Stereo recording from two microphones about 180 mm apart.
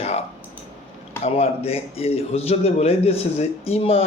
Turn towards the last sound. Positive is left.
turn(degrees=35)  # may be behind; listen again after turning